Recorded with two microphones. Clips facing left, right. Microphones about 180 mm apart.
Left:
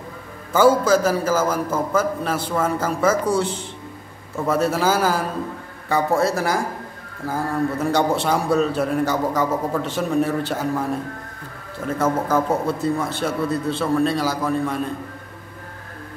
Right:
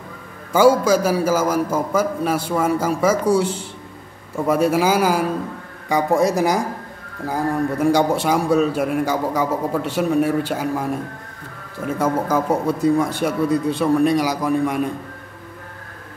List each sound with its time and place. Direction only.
0.5 s a man's voice: 10° right (ahead or behind)
12.0 s a man's voice: 10° right (ahead or behind)